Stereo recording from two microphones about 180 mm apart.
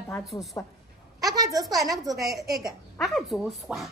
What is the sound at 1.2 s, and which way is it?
A woman's voice, 20° right (ahead or behind).